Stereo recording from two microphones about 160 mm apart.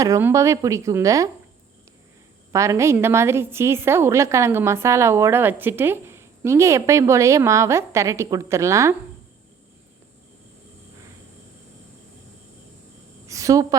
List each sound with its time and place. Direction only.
0.0 s a woman's voice: 15° right (ahead or behind)
2.5 s a woman's voice: 20° right (ahead or behind)
13.2 s a sound: 20° right (ahead or behind)